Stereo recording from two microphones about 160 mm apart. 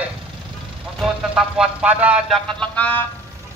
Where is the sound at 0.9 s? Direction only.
5° right (ahead or behind).